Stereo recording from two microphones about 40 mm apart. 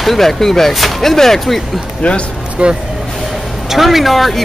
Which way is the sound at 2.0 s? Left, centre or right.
Left.